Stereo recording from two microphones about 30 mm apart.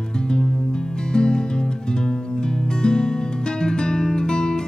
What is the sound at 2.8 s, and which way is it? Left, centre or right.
Music, left.